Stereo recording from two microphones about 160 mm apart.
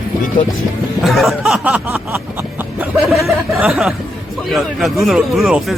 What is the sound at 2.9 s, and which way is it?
Speech, centre (ahead or behind).